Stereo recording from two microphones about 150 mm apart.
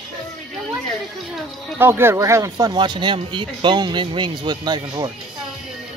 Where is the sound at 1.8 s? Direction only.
15° right (ahead or behind).